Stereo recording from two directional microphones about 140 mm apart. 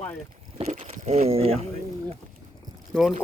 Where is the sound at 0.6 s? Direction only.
50° right (ahead or behind).